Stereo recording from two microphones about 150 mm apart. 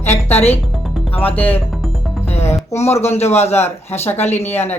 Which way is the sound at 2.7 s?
45° left (ahead or behind).